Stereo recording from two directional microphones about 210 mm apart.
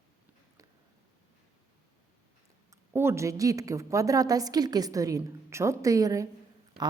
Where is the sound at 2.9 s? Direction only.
10° right (ahead or behind).